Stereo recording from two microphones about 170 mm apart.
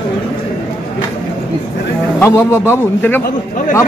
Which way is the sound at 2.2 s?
15° left (ahead or behind).